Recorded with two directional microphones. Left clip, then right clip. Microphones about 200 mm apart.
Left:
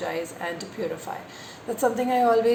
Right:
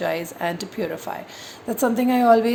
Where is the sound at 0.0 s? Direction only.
50° right (ahead or behind).